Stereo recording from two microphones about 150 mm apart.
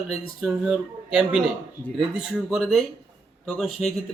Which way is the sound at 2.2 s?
5° right (ahead or behind).